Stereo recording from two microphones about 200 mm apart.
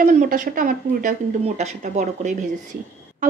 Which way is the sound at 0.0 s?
45° right (ahead or behind).